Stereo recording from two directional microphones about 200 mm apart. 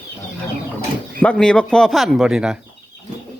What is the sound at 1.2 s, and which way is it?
Speech, 5° left (ahead or behind).